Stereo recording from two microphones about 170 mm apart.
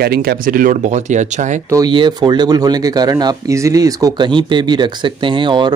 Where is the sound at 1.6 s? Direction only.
20° right (ahead or behind).